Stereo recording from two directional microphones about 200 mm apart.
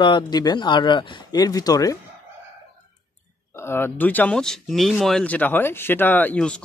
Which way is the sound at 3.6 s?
10° left (ahead or behind).